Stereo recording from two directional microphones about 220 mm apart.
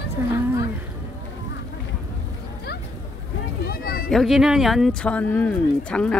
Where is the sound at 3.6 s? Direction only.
40° left (ahead or behind).